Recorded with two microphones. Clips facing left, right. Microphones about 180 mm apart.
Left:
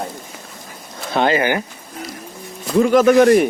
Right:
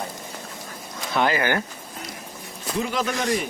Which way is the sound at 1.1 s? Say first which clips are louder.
Left 5 dB; 25° left (ahead or behind).